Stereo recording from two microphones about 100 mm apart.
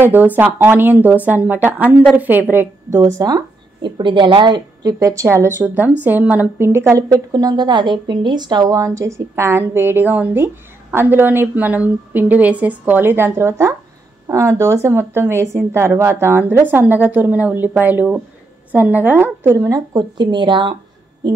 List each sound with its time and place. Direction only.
0.0 s a woman's voice: 20° right (ahead or behind)
3.8 s a woman's voice: 55° right (ahead or behind); by 5.5 s 30° right (ahead or behind)
5.6 s a woman's voice: 15° right (ahead or behind)
19.7 s a woman's voice: 45° right (ahead or behind)